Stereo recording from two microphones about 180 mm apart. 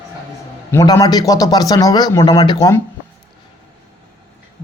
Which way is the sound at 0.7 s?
15° left (ahead or behind).